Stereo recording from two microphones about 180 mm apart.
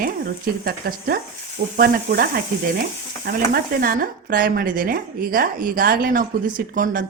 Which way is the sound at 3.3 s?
55° right (ahead or behind).